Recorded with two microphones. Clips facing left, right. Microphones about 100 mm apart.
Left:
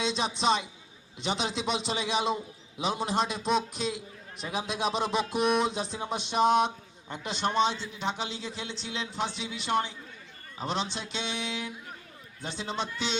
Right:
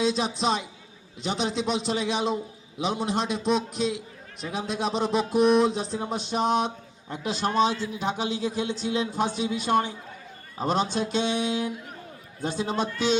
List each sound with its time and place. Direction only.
0.0 s a man's voice: centre (ahead or behind)
8.1 s speech: 45° right (ahead or behind)